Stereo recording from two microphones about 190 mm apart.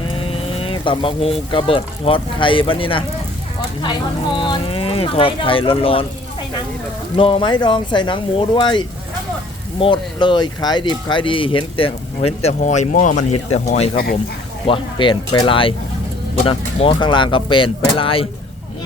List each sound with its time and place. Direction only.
0.3 s speech: 30° left (ahead or behind)
4.4 s speech: 25° left (ahead or behind)
7.2 s speech: 30° left (ahead or behind)
9.8 s speech: 25° left (ahead or behind)
13.9 s speech: 50° left (ahead or behind)
14.7 s speech: 25° left (ahead or behind)